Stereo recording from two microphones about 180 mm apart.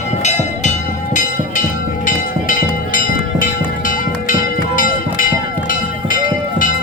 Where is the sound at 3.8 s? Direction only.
50° left (ahead or behind).